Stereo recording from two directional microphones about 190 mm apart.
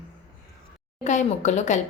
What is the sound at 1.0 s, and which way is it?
Speech, 40° left (ahead or behind).